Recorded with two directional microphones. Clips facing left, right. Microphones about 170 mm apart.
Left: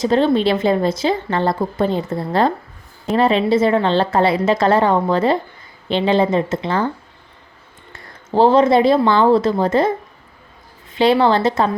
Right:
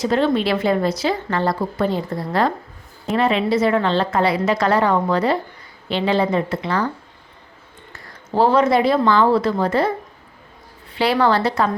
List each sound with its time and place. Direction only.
0.0 s a woman's voice: 30° left (ahead or behind)
8.3 s a woman's voice: 25° left (ahead or behind)
10.9 s a woman's voice: 25° left (ahead or behind)